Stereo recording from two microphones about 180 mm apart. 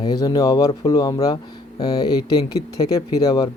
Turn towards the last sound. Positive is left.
turn(degrees=20)  # may be behind; listen again after turning